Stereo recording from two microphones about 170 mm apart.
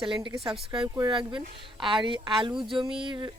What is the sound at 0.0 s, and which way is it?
Speech, 30° right (ahead or behind).